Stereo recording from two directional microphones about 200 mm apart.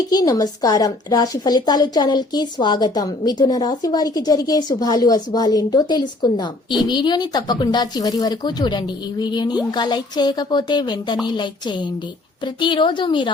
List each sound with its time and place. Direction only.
0.1 s a woman's voice: 20° left (ahead or behind)